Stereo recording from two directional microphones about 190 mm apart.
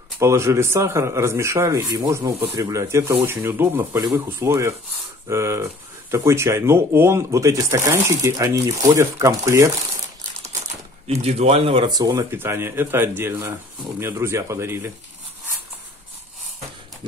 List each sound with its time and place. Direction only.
0.2 s speech: 15° right (ahead or behind)
11.1 s speech: 30° right (ahead or behind); by 14.9 s 15° right (ahead or behind)